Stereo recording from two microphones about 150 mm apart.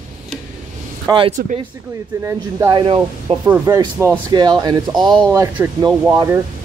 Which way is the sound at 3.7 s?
25° right (ahead or behind).